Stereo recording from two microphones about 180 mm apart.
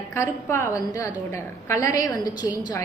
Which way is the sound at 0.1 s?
15° left (ahead or behind).